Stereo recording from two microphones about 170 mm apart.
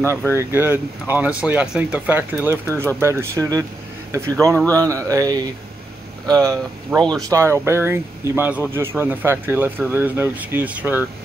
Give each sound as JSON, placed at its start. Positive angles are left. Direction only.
{"t": 0.3, "sound": "speech", "side_deg": -15}